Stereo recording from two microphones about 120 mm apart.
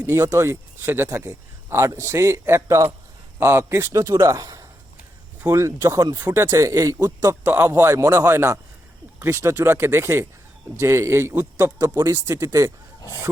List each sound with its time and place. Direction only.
0.0 s a man's voice: 25° right (ahead or behind)
6.2 s a man's voice: 20° right (ahead or behind)
13.0 s speech: 30° left (ahead or behind)